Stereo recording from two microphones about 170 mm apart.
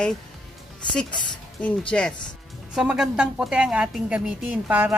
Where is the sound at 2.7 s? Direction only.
5° right (ahead or behind).